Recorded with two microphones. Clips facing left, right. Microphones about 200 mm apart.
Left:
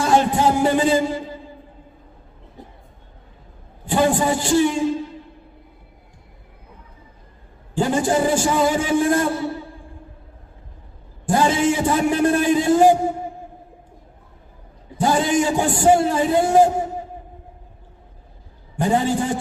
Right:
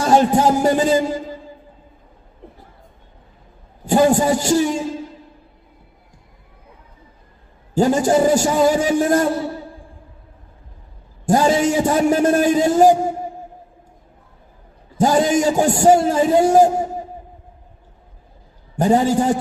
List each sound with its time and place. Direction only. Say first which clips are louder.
0.0 s music: right 3 dB; 40° right (ahead or behind)
3.8 s a man's voice: right 4 dB; 40° right (ahead or behind)
7.7 s a man's voice: right 4 dB; 40° right (ahead or behind)
11.3 s a man's voice: right 2 dB; 40° right (ahead or behind)
14.9 s a man's voice: right 3 dB; 40° right (ahead or behind)
18.8 s a man's voice: right 4 dB; 40° right (ahead or behind)